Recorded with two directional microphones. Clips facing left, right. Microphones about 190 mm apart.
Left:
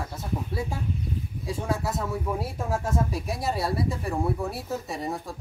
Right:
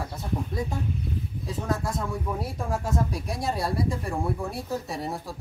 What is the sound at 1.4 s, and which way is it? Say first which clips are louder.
Speech: left 1 dB; 10° left (ahead or behind).